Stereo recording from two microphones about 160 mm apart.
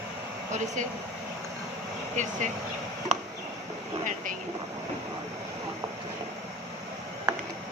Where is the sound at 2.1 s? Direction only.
50° right (ahead or behind).